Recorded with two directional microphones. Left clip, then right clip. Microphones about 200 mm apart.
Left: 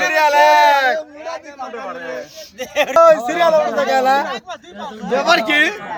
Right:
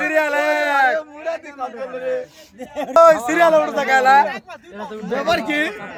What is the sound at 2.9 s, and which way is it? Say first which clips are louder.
A man's voice: even; 25° right (ahead or behind).